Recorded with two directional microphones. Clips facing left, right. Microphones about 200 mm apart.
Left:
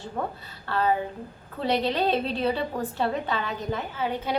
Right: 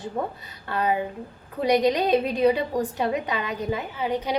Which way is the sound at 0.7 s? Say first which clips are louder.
Even; 15° right (ahead or behind).